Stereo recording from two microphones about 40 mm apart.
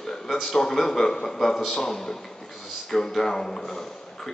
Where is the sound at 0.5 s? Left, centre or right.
Centre.